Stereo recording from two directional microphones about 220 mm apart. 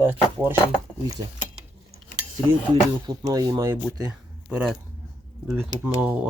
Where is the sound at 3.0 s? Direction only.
20° right (ahead or behind).